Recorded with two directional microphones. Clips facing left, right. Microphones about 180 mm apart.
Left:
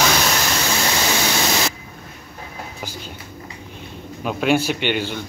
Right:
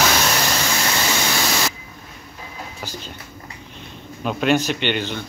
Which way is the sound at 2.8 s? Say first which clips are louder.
Right 1 dB; 15° left (ahead or behind).